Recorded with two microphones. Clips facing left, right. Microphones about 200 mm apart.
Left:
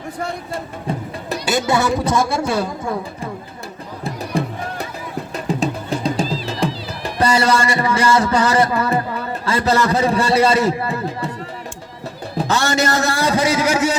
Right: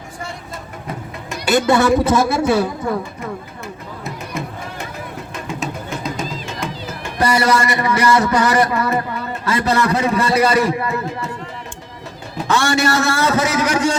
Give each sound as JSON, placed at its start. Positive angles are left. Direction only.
{"t": 0.5, "sound": "vehicle", "side_deg": 30}
{"t": 1.7, "sound": "a woman's voice", "side_deg": 0}
{"t": 4.0, "sound": "music", "side_deg": 30}
{"t": 5.3, "sound": "cat", "side_deg": 35}
{"t": 9.5, "sound": "a man's voice", "side_deg": 30}
{"t": 12.4, "sound": "a man's voice", "side_deg": 40}